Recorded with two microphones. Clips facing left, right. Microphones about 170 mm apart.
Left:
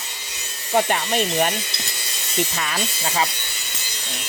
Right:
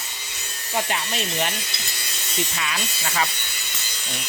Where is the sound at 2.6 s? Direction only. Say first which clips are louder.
Left 2 dB; 40° left (ahead or behind).